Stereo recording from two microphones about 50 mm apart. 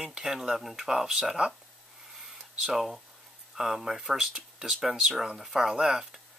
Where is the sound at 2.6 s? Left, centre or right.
Centre.